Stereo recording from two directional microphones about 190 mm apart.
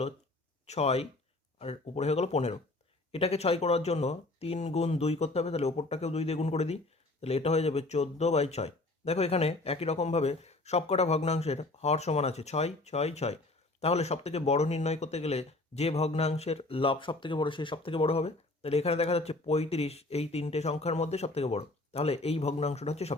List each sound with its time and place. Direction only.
0.7 s speech: 35° left (ahead or behind)